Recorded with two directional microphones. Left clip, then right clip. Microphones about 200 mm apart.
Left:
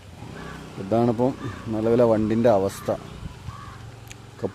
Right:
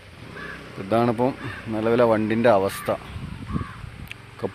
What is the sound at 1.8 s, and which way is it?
Speech, 5° left (ahead or behind).